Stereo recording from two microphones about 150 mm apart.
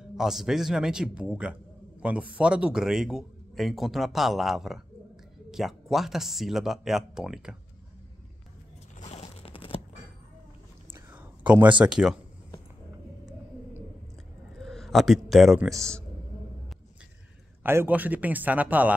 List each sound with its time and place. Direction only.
0.2 s speech: 5° right (ahead or behind)
9.0 s a sound: 45° left (ahead or behind)
10.9 s a sound: 10° right (ahead or behind)
11.8 s speech: 5° right (ahead or behind)
14.6 s a man's voice: centre (ahead or behind)
17.6 s a man's voice: 15° right (ahead or behind)